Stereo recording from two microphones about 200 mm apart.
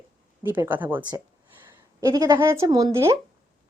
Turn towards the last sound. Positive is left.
turn(degrees=-15)  # may be behind; listen again after turning